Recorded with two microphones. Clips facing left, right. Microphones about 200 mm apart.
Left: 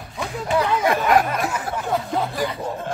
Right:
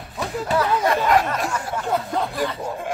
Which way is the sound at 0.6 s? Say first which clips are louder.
Even; 10° left (ahead or behind).